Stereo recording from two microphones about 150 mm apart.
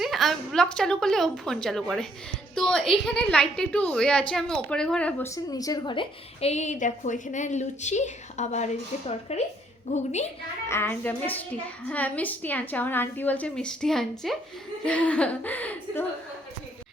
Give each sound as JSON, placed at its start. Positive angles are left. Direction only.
{"t": 0.0, "sound": "a woman's voice", "side_deg": 0}
{"t": 5.3, "sound": "a woman's voice", "side_deg": 25}
{"t": 10.7, "sound": "a woman's voice", "side_deg": 15}